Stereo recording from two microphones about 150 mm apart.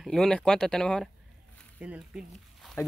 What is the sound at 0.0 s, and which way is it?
Speech, 5° left (ahead or behind).